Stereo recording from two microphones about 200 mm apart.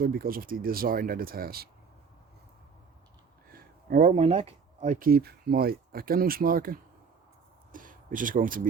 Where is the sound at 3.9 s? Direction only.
40° right (ahead or behind).